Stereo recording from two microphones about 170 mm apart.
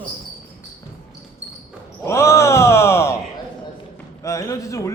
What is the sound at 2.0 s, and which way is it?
Speech, 15° left (ahead or behind).